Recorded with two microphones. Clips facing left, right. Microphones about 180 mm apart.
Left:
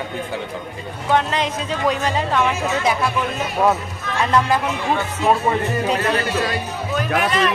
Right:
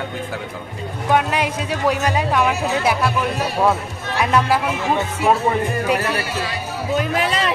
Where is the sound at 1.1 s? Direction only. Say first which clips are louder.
Right 1 dB; 10° right (ahead or behind).